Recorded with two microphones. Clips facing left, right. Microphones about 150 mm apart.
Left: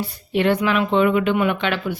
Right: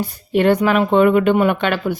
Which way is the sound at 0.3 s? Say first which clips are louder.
Right 4 dB; 45° right (ahead or behind).